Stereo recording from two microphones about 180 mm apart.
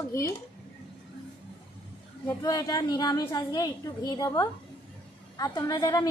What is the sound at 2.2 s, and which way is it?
A woman's voice, 20° left (ahead or behind).